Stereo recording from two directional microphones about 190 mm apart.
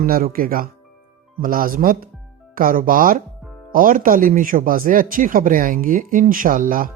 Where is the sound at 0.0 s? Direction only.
50° right (ahead or behind).